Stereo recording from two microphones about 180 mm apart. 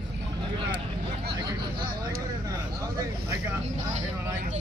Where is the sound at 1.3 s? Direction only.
25° right (ahead or behind).